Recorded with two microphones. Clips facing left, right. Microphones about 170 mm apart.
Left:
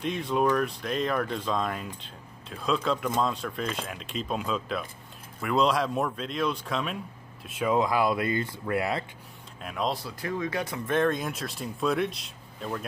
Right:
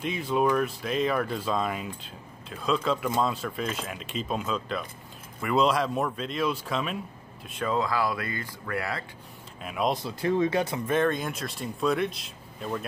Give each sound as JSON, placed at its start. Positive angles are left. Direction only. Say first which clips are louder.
{"t": 0.0, "sound": "speech", "louder": "even", "side_deg": 0}
{"t": 7.7, "sound": "speech", "louder": "left 3 dB", "side_deg": 20}
{"t": 9.6, "sound": "speech", "louder": "right 2 dB", "side_deg": -5}
{"t": 9.8, "sound": "speech", "louder": "right 6 dB", "side_deg": -25}
{"t": 10.9, "sound": "speech", "louder": "left 2 dB", "side_deg": 0}